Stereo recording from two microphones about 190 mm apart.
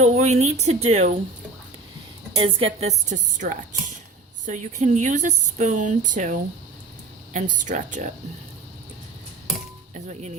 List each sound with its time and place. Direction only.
0.0 s speech: 35° right (ahead or behind)
2.3 s a woman's voice: 30° right (ahead or behind)
7.3 s speech: 40° right (ahead or behind)
9.9 s speech: 35° right (ahead or behind)